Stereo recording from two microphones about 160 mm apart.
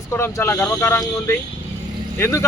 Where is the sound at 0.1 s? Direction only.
15° left (ahead or behind).